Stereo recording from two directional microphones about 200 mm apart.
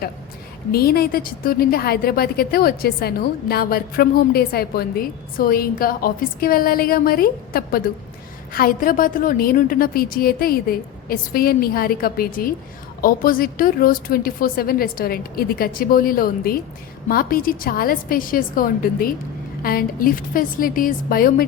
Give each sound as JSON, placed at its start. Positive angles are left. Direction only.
{"t": 0.7, "sound": "a woman's voice", "side_deg": 50}